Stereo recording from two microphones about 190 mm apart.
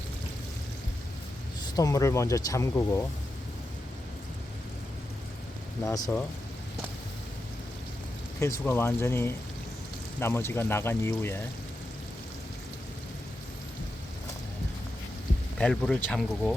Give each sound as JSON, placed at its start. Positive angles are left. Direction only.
{"t": 1.7, "sound": "speech", "side_deg": 15}
{"t": 5.8, "sound": "speech", "side_deg": 20}
{"t": 8.4, "sound": "speech", "side_deg": 15}
{"t": 15.5, "sound": "speech", "side_deg": 5}